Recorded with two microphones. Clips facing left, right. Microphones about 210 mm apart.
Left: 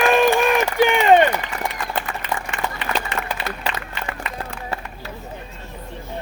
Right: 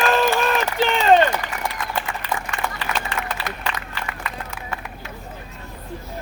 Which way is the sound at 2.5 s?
30° left (ahead or behind).